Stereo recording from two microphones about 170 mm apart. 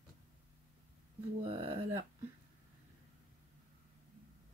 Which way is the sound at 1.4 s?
35° right (ahead or behind).